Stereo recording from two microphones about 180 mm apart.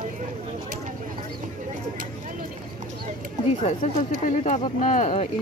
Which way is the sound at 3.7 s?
40° left (ahead or behind).